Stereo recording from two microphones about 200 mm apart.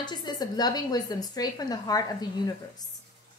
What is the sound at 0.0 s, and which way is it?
A woman's voice, 20° left (ahead or behind).